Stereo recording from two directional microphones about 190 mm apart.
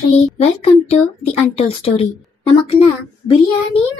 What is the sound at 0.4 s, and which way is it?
A child's voice, 35° left (ahead or behind).